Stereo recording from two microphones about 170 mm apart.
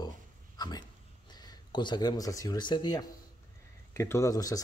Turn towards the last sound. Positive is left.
turn(degrees=20)  # may be behind; listen again after turning